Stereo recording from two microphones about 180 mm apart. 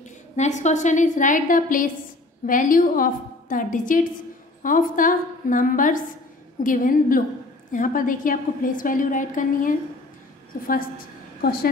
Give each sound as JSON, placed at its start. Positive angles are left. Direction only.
{"t": 0.4, "sound": "a woman's voice", "side_deg": 40}